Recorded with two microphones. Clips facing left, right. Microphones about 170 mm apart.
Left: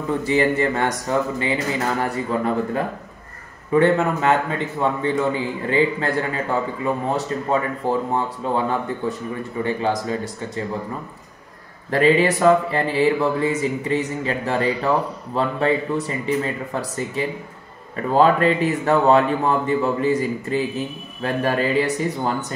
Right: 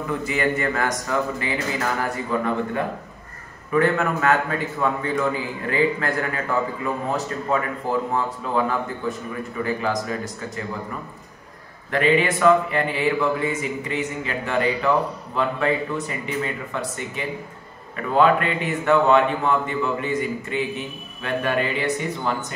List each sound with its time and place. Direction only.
0.2 s a man's voice: 30° left (ahead or behind)
11.9 s a man's voice: 35° left (ahead or behind)